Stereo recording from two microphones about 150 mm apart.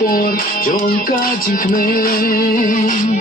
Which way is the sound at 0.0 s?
70° left (ahead or behind).